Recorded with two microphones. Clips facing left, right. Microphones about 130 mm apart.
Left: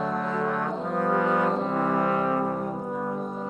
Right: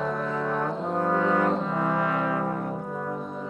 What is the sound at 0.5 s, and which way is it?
Brass instrument, 30° right (ahead or behind).